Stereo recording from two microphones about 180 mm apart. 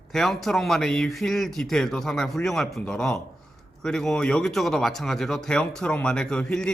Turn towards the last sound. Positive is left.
turn(degrees=5)  # may be behind; listen again after turning